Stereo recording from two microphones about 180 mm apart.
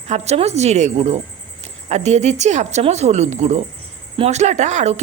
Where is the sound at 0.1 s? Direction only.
35° right (ahead or behind).